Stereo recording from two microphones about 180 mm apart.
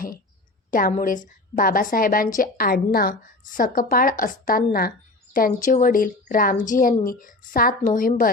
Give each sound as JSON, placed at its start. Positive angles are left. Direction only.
{"t": 0.7, "sound": "a woman's voice", "side_deg": 50}